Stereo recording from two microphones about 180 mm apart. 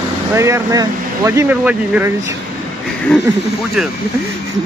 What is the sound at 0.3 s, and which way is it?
Speech, 15° right (ahead or behind).